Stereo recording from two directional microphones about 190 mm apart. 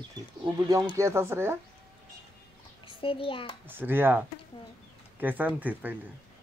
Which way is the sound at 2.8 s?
30° left (ahead or behind).